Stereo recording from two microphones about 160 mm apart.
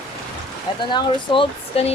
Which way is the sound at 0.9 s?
35° left (ahead or behind).